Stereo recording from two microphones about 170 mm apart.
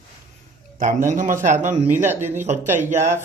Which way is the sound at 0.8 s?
45° right (ahead or behind).